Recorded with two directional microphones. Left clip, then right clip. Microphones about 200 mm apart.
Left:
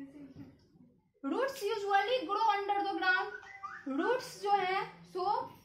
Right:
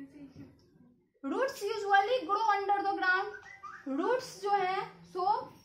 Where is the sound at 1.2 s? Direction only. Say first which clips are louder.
Right 1 dB; 15° right (ahead or behind).